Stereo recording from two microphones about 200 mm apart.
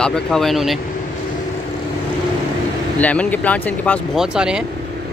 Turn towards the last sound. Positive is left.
turn(degrees=-5)  # may be behind; listen again after turning